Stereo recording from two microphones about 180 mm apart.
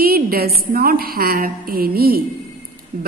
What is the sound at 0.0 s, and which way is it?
A woman's voice, 55° right (ahead or behind).